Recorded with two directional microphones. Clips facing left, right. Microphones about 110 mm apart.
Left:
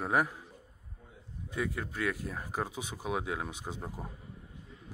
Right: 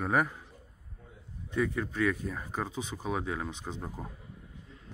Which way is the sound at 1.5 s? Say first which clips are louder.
Right 5 dB; 5° left (ahead or behind).